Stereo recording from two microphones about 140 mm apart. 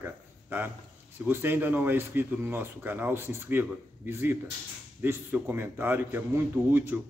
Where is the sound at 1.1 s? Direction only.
15° right (ahead or behind).